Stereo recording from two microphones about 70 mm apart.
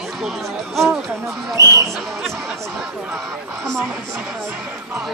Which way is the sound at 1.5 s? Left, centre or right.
Right.